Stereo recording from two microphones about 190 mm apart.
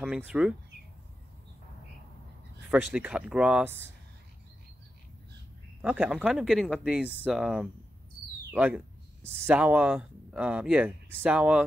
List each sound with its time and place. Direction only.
0.3 s speech: 5° right (ahead or behind)
2.7 s speech: 5° right (ahead or behind)
5.8 s speech: 5° right (ahead or behind)